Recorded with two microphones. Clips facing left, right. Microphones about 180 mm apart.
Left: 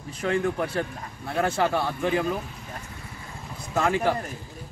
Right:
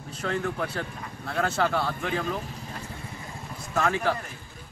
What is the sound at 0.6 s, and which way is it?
Speech, 15° left (ahead or behind).